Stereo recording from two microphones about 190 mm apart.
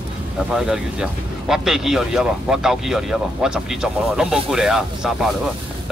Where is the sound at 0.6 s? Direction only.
5° right (ahead or behind).